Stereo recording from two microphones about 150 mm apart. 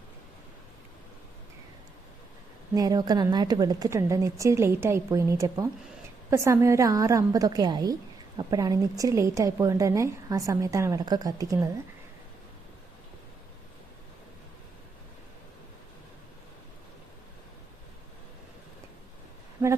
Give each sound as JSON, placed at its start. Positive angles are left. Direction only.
{"t": 2.7, "sound": "a woman's voice", "side_deg": -25}